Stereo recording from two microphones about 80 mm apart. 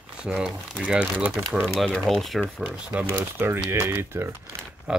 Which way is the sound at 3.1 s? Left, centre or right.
Right.